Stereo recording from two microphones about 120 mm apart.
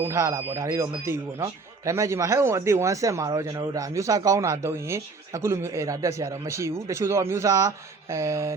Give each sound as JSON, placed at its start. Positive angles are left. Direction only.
{"t": 0.1, "sound": "a man's voice", "side_deg": -25}